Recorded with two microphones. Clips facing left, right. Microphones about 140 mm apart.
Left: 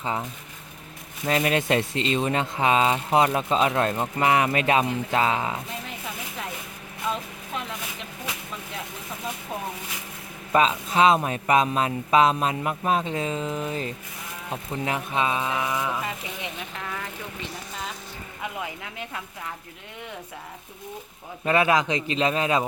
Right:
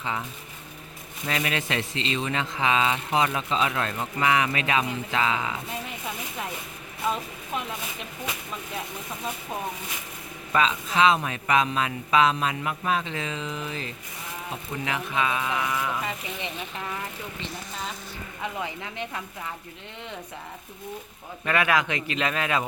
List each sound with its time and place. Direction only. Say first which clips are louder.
0.0 s speech: left 3 dB; 35° left (ahead or behind)
1.3 s speech: left 6 dB; 40° left (ahead or behind)
10.5 s speech: left 3 dB; 40° left (ahead or behind); by 16.0 s 20° left (ahead or behind)
16.0 s speech: even; 5° left (ahead or behind)
18.6 s speech: right 2 dB; 5° left (ahead or behind)
21.4 s speech: left 3 dB; 30° left (ahead or behind)